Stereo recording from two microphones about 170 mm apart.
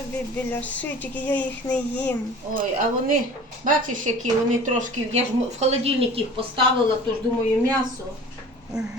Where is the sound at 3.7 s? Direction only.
50° right (ahead or behind); by 6.4 s 35° right (ahead or behind).